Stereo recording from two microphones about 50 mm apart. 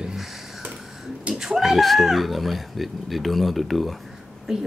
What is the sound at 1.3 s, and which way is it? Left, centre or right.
Speech, centre.